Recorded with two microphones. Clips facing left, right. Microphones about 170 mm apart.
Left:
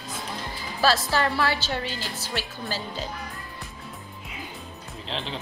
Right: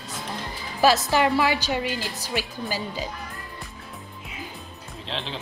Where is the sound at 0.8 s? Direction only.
15° right (ahead or behind).